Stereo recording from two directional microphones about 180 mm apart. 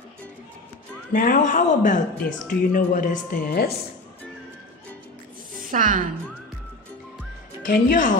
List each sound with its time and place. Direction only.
1.1 s a woman's voice: 50° left (ahead or behind)
5.6 s a woman's voice: 50° right (ahead or behind)
7.6 s a woman's voice: 50° left (ahead or behind)